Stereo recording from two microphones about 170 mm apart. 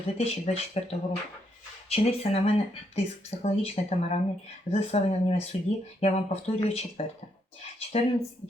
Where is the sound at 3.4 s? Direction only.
40° left (ahead or behind).